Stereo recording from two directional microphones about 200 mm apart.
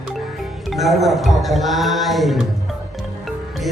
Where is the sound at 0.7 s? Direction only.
Centre (ahead or behind).